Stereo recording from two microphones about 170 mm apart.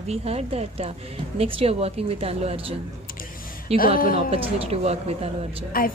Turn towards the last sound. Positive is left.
turn(degrees=-35)  # may be behind; listen again after turning